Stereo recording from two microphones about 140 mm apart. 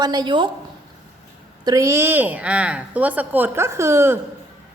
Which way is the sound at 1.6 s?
25° right (ahead or behind).